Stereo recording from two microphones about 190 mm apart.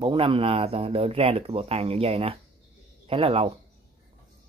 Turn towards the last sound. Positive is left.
turn(degrees=-30)  # may be behind; listen again after turning